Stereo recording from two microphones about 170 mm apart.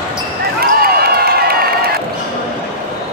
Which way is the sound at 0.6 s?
60° right (ahead or behind).